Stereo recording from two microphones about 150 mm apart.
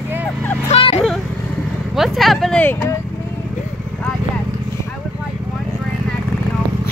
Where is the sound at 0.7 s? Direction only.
40° left (ahead or behind).